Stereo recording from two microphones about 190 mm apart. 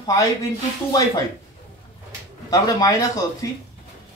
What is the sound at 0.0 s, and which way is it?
Speech, 15° left (ahead or behind).